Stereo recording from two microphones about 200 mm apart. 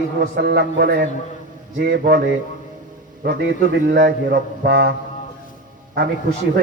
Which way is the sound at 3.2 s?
45° right (ahead or behind).